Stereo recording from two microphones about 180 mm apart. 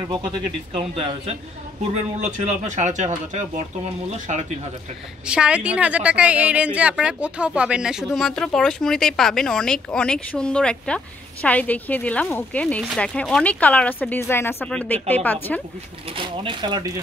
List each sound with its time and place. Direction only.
0.7 s speech: 30° right (ahead or behind)
4.1 s speech: 40° right (ahead or behind)
5.2 s a woman's voice: 5° right (ahead or behind); by 15.6 s 10° left (ahead or behind)
16.1 s speech: 25° right (ahead or behind)